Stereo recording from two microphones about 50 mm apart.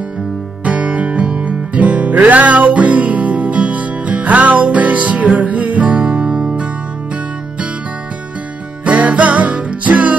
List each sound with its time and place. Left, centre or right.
0.7 s music: right
8.8 s music: right